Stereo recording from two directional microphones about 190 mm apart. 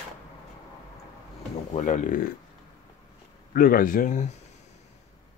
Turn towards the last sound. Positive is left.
turn(degrees=40)  # may be behind; listen again after turning